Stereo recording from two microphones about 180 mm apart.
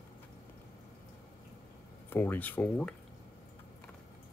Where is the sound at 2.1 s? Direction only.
10° left (ahead or behind).